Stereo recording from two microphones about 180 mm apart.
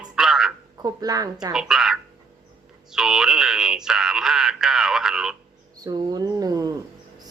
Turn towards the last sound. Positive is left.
turn(degrees=-20)  # may be behind; listen again after turning